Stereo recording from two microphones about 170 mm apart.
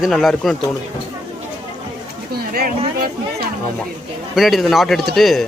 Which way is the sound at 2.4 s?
65° right (ahead or behind).